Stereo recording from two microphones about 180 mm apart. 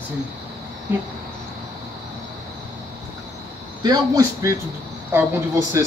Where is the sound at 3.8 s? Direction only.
20° right (ahead or behind).